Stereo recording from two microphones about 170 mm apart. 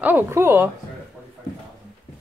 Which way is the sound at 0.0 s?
15° right (ahead or behind).